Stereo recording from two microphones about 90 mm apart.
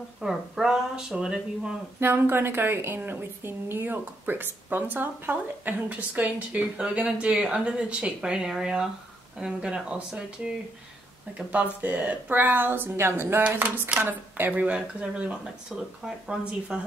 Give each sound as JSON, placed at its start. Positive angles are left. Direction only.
{"t": 0.2, "sound": "speech", "side_deg": -5}
{"t": 2.0, "sound": "a woman's voice", "side_deg": -25}
{"t": 13.7, "sound": "speech", "side_deg": -15}